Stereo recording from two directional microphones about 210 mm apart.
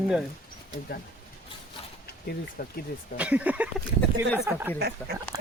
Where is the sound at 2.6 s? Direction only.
45° left (ahead or behind).